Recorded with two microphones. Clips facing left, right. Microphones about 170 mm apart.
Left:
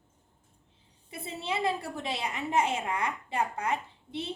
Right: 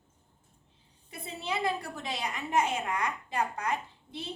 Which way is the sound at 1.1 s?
25° left (ahead or behind).